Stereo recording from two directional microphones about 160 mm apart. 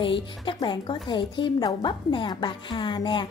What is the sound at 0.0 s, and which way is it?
A woman's voice, 30° left (ahead or behind).